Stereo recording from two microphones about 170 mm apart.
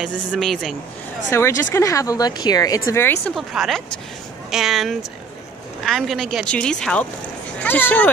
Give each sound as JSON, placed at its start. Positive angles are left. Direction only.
{"t": 0.0, "sound": "a woman's voice", "side_deg": 0}
{"t": 1.3, "sound": "speech", "side_deg": 15}
{"t": 3.3, "sound": "a woman's voice", "side_deg": 0}